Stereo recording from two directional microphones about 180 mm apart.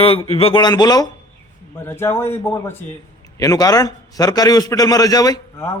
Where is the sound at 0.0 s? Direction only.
30° left (ahead or behind).